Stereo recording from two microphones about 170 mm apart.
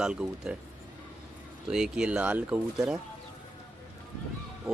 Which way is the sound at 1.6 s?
5° right (ahead or behind).